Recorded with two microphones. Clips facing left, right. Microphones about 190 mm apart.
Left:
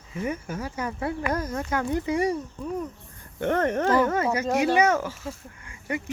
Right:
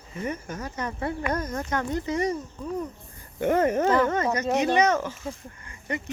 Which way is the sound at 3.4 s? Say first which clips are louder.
Right 2 dB; 10° right (ahead or behind).